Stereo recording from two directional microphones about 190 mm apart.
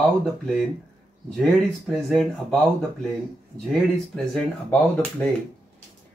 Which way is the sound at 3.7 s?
5° left (ahead or behind).